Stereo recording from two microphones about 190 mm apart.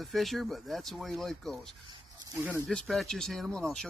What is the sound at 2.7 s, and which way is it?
Speech, centre (ahead or behind).